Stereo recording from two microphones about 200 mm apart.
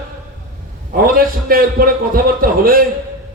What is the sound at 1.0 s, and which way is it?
A man's voice, 45° right (ahead or behind).